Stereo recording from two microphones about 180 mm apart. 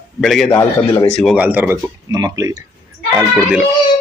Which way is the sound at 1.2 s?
5° right (ahead or behind).